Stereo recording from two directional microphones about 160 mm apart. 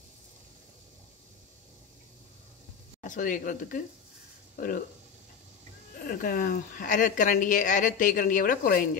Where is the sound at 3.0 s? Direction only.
55° left (ahead or behind).